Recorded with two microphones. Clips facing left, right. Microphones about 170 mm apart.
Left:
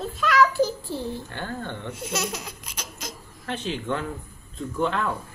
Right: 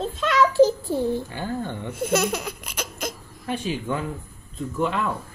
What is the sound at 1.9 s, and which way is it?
Laughter, 55° right (ahead or behind).